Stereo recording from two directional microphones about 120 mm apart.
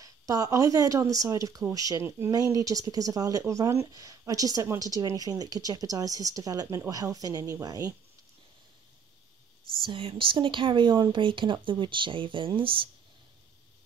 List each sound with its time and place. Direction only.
0.0 s speech: 30° right (ahead or behind)
9.8 s speech: 45° right (ahead or behind)